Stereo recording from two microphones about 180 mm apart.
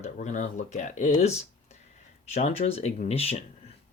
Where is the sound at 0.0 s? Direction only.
40° left (ahead or behind).